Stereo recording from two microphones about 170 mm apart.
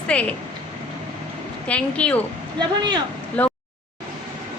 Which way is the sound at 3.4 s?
10° left (ahead or behind).